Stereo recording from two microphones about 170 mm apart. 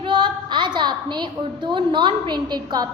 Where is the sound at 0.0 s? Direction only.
30° right (ahead or behind).